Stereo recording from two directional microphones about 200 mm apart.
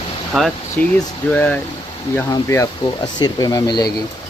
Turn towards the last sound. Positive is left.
turn(degrees=20)  # may be behind; listen again after turning